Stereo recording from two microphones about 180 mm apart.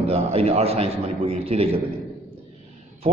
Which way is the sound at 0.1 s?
35° right (ahead or behind).